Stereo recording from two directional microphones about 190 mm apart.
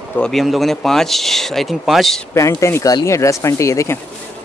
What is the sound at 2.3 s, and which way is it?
Speech, 15° left (ahead or behind).